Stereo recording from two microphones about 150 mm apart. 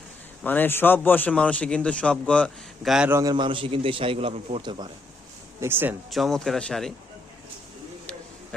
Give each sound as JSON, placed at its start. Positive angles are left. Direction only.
{"t": 0.4, "sound": "a man's voice", "side_deg": 10}
{"t": 3.1, "sound": "a man's voice", "side_deg": -20}
{"t": 5.5, "sound": "speech", "side_deg": -15}
{"t": 6.1, "sound": "speech", "side_deg": 0}